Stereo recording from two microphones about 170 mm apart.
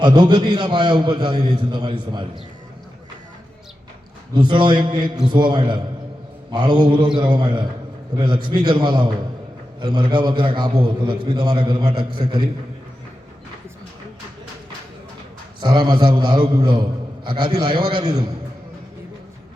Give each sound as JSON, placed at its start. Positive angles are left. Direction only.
{"t": 0.0, "sound": "a man's voice", "side_deg": -25}
{"t": 4.4, "sound": "a man's voice", "side_deg": -25}
{"t": 15.6, "sound": "a man's voice", "side_deg": -25}